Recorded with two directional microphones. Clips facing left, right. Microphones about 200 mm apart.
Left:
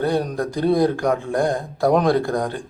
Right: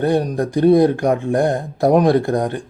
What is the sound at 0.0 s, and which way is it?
Speech, 25° right (ahead or behind).